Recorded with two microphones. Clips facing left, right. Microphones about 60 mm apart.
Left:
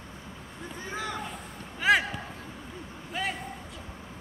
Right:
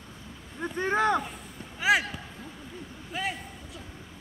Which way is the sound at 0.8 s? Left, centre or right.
Right.